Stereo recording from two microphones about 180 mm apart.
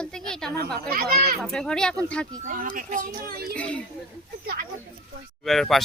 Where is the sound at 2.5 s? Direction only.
50° right (ahead or behind).